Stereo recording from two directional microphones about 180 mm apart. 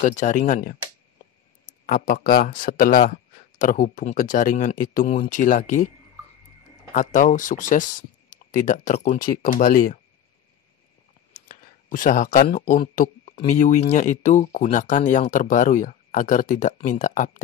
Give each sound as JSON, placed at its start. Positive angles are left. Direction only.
{"t": 0.0, "sound": "speech", "side_deg": 40}
{"t": 1.9, "sound": "speech", "side_deg": 55}
{"t": 6.9, "sound": "speech", "side_deg": 45}
{"t": 11.3, "sound": "speech", "side_deg": 50}